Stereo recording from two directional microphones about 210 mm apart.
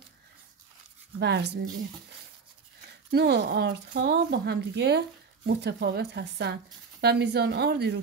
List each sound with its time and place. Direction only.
1.2 s speech: 55° right (ahead or behind)
3.1 s speech: 50° right (ahead or behind)